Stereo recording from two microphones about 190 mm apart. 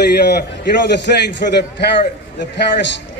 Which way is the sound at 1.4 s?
55° left (ahead or behind).